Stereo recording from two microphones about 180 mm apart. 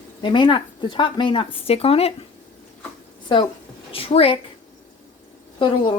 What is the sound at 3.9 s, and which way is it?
Speech, 30° left (ahead or behind).